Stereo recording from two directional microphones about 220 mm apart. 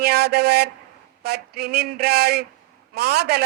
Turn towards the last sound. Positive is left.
turn(degrees=-45)  # may be behind; listen again after turning